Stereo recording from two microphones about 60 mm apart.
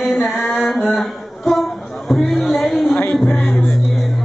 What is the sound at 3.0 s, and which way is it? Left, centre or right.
Music, left.